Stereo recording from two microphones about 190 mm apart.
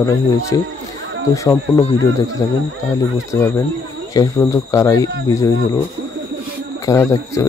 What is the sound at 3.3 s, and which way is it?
Speech, 15° left (ahead or behind).